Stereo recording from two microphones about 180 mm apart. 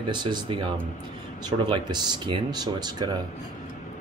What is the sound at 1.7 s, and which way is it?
Speech, 25° right (ahead or behind).